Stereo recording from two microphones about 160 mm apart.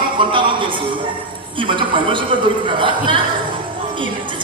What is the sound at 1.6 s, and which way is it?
Speech, 30° right (ahead or behind).